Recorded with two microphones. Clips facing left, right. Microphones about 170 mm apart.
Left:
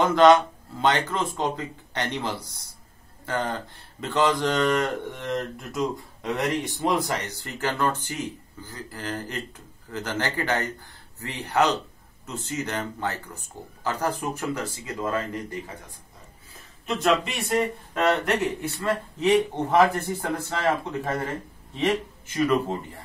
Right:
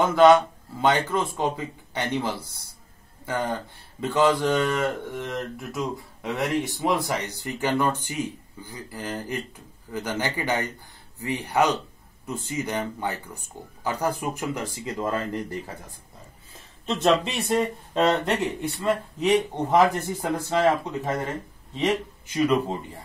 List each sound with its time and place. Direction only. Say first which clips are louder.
0.0 s speech: even; 10° right (ahead or behind)
16.8 s speech: right 2 dB; 30° right (ahead or behind)
17.5 s speech: even; 15° right (ahead or behind)